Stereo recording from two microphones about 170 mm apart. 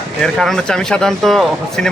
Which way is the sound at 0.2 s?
Centre (ahead or behind).